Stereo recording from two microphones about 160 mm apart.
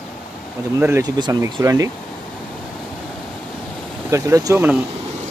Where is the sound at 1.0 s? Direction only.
25° right (ahead or behind).